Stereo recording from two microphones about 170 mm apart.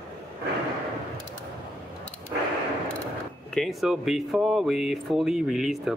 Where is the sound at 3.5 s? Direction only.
Centre (ahead or behind).